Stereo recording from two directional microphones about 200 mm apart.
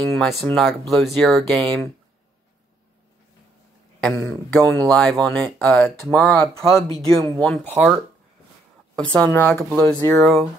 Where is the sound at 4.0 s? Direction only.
10° left (ahead or behind).